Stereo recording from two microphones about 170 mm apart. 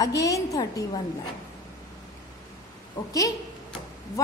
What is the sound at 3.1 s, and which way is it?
Speech, 20° left (ahead or behind).